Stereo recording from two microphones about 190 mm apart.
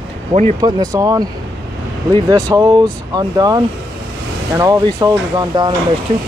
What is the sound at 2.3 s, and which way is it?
Speech, 20° right (ahead or behind).